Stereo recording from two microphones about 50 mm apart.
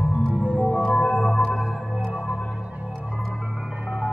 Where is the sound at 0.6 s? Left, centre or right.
Centre.